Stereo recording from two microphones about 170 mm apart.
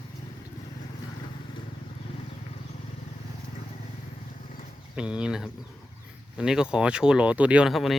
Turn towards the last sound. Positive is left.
turn(degrees=0)  # may be behind; listen again after turning